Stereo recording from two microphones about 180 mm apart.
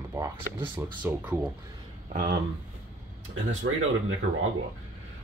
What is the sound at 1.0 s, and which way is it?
Speech, 10° right (ahead or behind).